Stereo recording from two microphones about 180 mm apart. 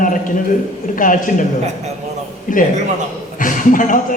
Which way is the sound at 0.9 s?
50° left (ahead or behind).